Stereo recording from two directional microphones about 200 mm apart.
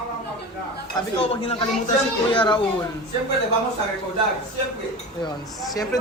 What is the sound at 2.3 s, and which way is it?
Speech, 25° left (ahead or behind).